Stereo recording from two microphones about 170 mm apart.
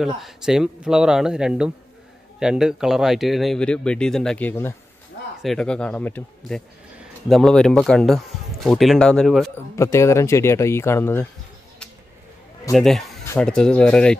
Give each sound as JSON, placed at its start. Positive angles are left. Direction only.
{"t": 0.0, "sound": "speech", "side_deg": 0}
{"t": 9.8, "sound": "speech", "side_deg": 15}
{"t": 12.7, "sound": "speech", "side_deg": 0}
{"t": 13.2, "sound": "a sound", "side_deg": 15}
{"t": 13.5, "sound": "speech", "side_deg": 5}